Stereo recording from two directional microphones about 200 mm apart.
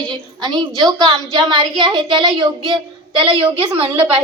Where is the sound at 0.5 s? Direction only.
20° right (ahead or behind).